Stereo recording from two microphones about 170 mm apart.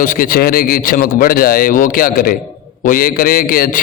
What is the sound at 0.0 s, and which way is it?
A man's voice, 60° left (ahead or behind).